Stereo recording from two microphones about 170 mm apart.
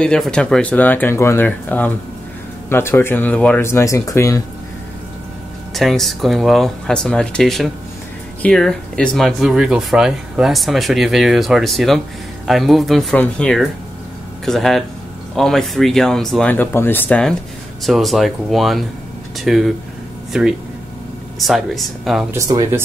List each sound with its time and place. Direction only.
0.0 s speech: 5° left (ahead or behind)
5.8 s speech: centre (ahead or behind)
22.3 s speech: 20° right (ahead or behind)